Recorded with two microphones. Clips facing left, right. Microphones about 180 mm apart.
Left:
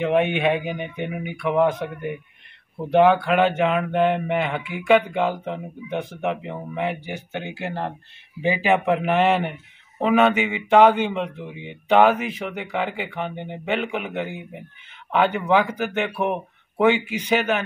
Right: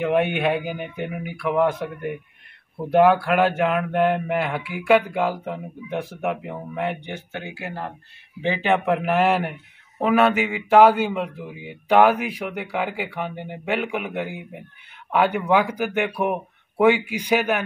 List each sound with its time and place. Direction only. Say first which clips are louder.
0.0 s speech: left 1 dB; 5° right (ahead or behind)
7.4 s speech: left 5 dB; 25° left (ahead or behind)
8.4 s speech: left 1 dB; 10° left (ahead or behind); by 17.6 s 10° right (ahead or behind)